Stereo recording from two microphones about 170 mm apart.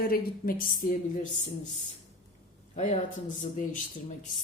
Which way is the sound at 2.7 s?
40° left (ahead or behind).